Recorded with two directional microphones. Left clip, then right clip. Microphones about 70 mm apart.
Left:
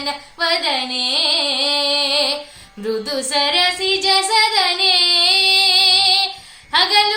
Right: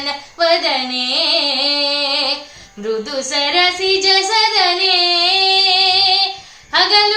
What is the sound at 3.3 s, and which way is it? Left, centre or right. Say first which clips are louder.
Child singing: right 2 dB; right.